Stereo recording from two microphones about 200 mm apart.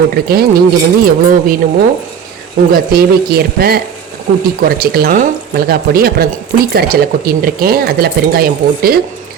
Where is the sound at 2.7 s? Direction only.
50° right (ahead or behind).